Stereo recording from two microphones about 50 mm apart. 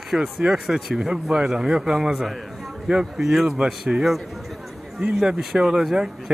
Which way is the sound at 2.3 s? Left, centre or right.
Centre.